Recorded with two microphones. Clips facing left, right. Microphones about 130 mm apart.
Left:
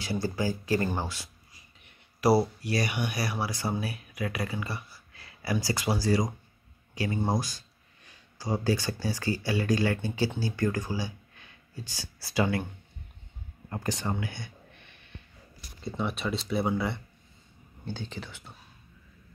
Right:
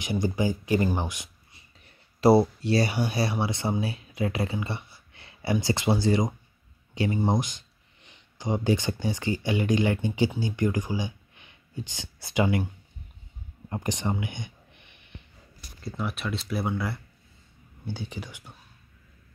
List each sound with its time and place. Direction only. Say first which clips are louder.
0.0 s speech: right 3 dB; 20° right (ahead or behind)
13.7 s speech: right 2 dB; 20° right (ahead or behind)
14.2 s a sound: right 2 dB; 20° right (ahead or behind)
16.0 s speech: left 1 dB; centre (ahead or behind)
17.8 s speech: right 2 dB; 10° right (ahead or behind)